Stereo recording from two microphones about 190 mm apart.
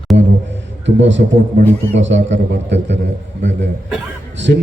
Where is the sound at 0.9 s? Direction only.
70° right (ahead or behind).